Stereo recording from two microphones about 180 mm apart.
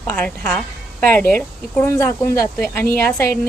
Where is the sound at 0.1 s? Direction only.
10° left (ahead or behind).